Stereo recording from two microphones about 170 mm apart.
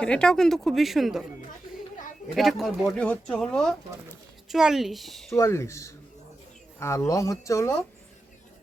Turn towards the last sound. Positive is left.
turn(degrees=20)  # may be behind; listen again after turning